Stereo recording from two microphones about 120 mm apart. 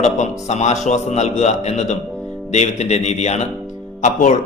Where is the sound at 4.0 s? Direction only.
90° left.